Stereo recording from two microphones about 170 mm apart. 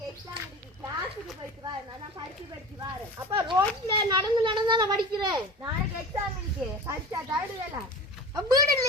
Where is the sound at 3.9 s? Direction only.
30° right (ahead or behind).